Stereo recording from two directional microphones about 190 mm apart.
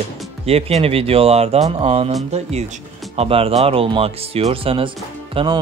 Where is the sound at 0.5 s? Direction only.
30° right (ahead or behind).